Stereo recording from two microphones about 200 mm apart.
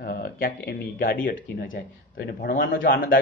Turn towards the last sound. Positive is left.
turn(degrees=45)  # may be behind; listen again after turning